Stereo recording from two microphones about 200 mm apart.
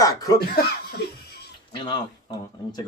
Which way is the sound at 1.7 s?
25° left (ahead or behind).